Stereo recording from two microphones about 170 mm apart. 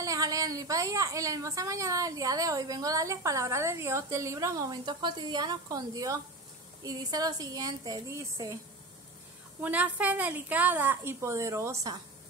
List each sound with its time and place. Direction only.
0.0 s a woman's voice: 20° right (ahead or behind)
9.6 s a woman's voice: 10° right (ahead or behind)